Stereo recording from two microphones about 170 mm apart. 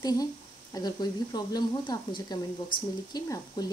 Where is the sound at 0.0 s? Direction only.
20° left (ahead or behind).